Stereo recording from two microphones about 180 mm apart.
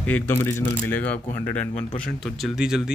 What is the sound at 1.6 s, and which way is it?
Speech, 35° left (ahead or behind).